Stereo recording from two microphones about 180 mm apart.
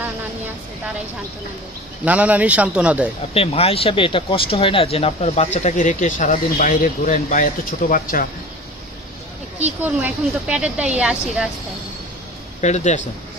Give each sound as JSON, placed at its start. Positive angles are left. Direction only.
{"t": 2.0, "sound": "speech", "side_deg": -10}
{"t": 3.3, "sound": "speech", "side_deg": 35}
{"t": 9.8, "sound": "a woman's voice", "side_deg": -5}
{"t": 12.5, "sound": "speech", "side_deg": 40}